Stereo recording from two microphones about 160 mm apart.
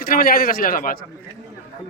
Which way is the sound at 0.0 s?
65° left (ahead or behind).